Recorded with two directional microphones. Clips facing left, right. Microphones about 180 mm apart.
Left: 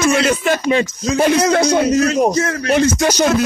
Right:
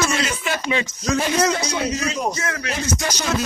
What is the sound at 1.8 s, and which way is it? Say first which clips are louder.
Speech: left 10 dB; 50° left (ahead or behind).